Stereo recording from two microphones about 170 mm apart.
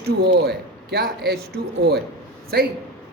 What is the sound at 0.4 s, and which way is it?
Speech, 65° right (ahead or behind).